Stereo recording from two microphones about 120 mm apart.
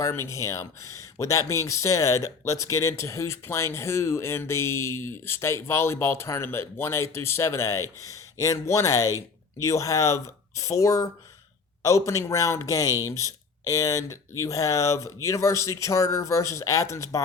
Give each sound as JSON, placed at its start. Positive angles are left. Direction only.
{"t": 0.0, "sound": "speech", "side_deg": 25}